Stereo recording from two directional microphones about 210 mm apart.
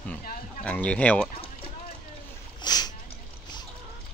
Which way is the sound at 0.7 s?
5° left (ahead or behind).